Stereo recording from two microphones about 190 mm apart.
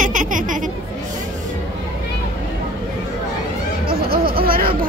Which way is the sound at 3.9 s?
50° right (ahead or behind).